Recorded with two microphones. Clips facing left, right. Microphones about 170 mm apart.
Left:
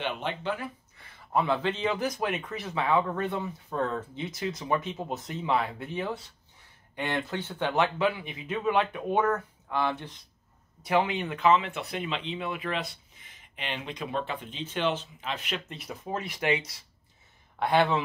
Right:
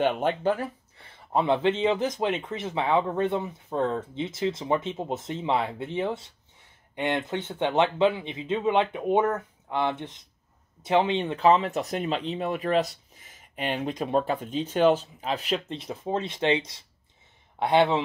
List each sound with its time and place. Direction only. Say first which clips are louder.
0.0 s speech: right 8 dB; 45° right (ahead or behind)
0.9 s speech: right 2 dB; 25° right (ahead or behind)